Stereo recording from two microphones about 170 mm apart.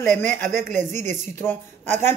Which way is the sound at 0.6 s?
45° right (ahead or behind).